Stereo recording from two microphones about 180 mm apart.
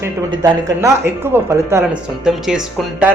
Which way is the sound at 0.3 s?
20° right (ahead or behind).